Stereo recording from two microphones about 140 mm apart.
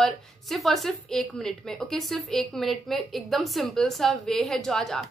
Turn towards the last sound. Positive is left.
turn(degrees=5)  # may be behind; listen again after turning